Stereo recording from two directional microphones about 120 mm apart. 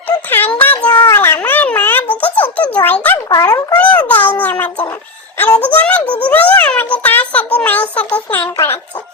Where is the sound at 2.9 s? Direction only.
15° left (ahead or behind).